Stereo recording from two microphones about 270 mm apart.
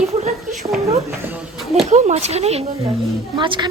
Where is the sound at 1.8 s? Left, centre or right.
Right.